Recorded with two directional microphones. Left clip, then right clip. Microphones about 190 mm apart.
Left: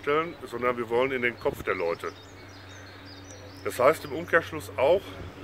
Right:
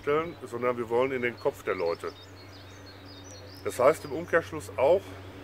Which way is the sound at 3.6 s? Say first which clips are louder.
Left 1 dB; centre (ahead or behind).